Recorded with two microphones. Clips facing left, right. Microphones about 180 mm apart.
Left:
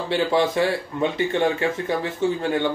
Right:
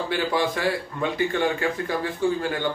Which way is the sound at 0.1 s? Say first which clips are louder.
Left 6 dB; 25° left (ahead or behind).